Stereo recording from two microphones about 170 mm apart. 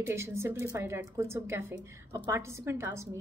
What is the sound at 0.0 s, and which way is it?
A woman's voice, 15° right (ahead or behind).